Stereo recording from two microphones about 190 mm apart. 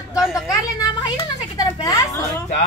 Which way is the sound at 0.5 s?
20° left (ahead or behind).